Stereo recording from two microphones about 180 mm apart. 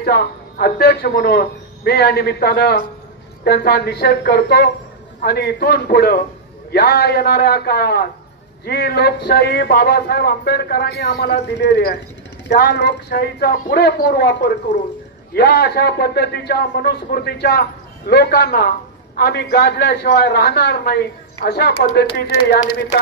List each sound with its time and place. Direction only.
0.0 s speech: 60° left (ahead or behind)